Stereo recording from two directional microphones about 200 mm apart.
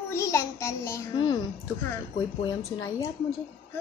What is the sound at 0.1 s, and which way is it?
Child singing, 15° left (ahead or behind).